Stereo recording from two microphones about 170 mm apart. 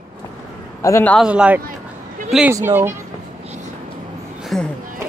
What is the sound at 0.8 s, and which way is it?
Speech, 15° left (ahead or behind).